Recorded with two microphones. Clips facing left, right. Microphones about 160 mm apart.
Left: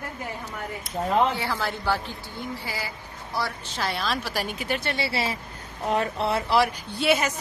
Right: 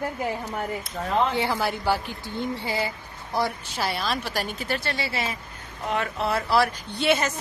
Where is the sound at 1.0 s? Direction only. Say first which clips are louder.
Left 5 dB; 25° left (ahead or behind).